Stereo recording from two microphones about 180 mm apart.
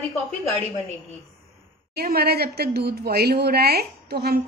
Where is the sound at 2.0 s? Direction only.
60° right (ahead or behind).